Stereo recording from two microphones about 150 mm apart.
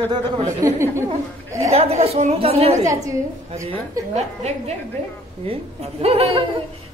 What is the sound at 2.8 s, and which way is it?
Speech, 20° right (ahead or behind).